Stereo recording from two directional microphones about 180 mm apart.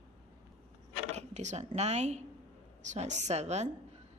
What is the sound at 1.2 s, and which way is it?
A woman's voice, 40° right (ahead or behind).